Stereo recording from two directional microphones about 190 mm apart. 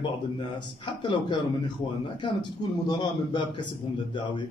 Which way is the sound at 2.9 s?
25° left (ahead or behind).